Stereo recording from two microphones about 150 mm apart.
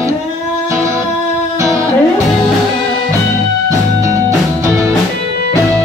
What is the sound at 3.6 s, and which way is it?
Music, 20° right (ahead or behind).